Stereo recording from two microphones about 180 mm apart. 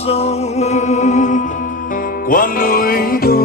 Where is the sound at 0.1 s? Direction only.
35° left (ahead or behind).